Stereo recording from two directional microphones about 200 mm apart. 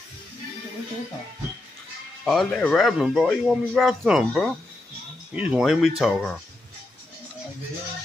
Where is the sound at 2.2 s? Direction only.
Centre (ahead or behind).